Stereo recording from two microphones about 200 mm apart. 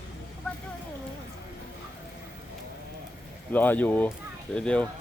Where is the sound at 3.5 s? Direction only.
10° left (ahead or behind).